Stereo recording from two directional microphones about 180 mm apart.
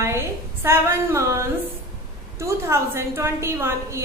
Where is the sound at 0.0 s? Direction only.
15° right (ahead or behind).